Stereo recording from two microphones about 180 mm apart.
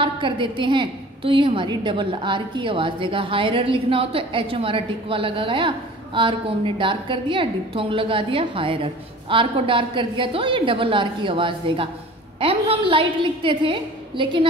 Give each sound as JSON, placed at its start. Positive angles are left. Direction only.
{"t": 0.0, "sound": "a woman's voice", "side_deg": -30}